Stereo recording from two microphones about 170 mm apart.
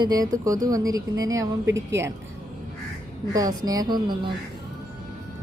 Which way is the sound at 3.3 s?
20° right (ahead or behind).